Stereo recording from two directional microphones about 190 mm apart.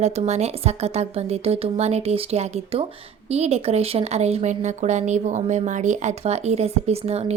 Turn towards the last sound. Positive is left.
turn(degrees=-35)  # may be behind; listen again after turning